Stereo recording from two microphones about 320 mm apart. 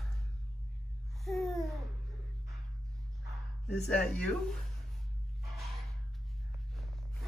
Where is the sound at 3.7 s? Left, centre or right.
Centre.